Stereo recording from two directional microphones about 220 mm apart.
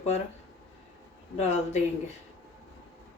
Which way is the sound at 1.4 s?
30° left (ahead or behind).